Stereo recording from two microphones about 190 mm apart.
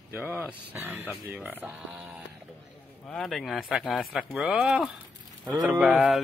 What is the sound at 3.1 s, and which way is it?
Speech, centre (ahead or behind).